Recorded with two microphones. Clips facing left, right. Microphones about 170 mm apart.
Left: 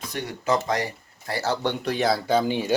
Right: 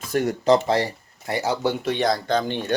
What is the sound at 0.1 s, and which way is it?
Speech, 45° right (ahead or behind).